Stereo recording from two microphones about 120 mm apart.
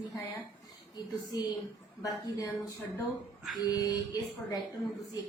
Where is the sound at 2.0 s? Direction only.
30° left (ahead or behind).